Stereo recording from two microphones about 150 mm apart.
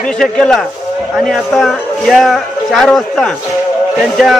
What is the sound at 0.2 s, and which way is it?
Speech, 5° left (ahead or behind).